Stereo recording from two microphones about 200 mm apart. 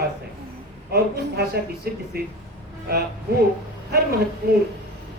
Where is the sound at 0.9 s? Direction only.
50° right (ahead or behind).